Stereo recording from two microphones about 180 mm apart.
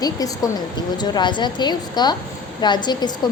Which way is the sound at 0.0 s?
20° left (ahead or behind).